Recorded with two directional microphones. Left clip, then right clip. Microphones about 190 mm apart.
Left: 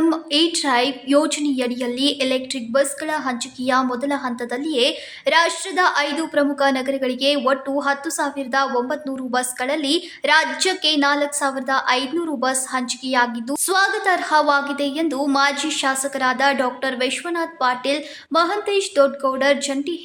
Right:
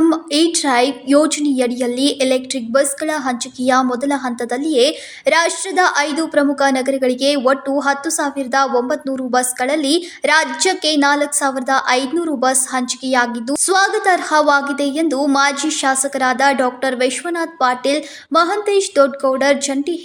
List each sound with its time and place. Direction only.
0.0 s a woman's voice: 15° right (ahead or behind)